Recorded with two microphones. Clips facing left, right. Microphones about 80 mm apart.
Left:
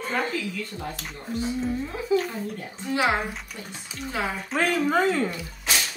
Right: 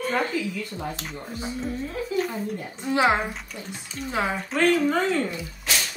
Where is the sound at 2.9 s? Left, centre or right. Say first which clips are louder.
Right 3 dB; right.